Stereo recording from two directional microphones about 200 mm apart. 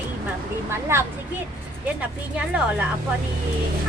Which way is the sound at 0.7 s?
10° right (ahead or behind).